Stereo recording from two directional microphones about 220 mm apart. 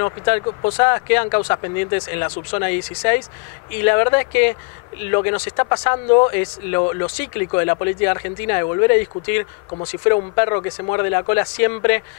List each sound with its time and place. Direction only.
0.0 s speech: 20° left (ahead or behind)
0.6 s speech: 30° left (ahead or behind)
0.8 s speech: 20° left (ahead or behind)